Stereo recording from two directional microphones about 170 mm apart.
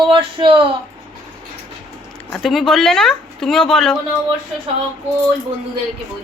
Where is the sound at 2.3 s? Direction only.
Centre (ahead or behind).